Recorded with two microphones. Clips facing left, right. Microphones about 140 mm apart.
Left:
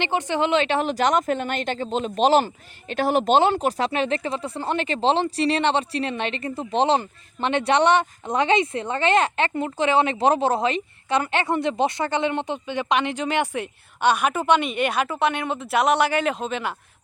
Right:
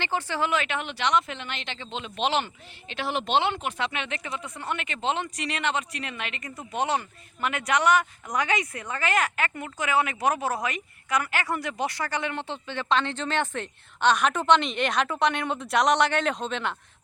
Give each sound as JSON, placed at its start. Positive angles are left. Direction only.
{"t": 0.0, "sound": "speech", "side_deg": 20}